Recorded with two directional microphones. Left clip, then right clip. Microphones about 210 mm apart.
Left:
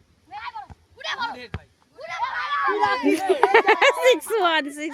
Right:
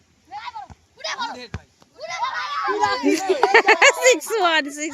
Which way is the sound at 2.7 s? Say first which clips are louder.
Right 1 dB; 10° left (ahead or behind).